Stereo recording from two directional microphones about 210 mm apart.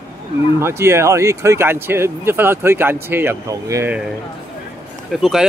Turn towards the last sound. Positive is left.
turn(degrees=0)  # may be behind; listen again after turning